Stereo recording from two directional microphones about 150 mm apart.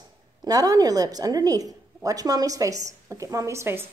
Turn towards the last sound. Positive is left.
turn(degrees=-15)  # may be behind; listen again after turning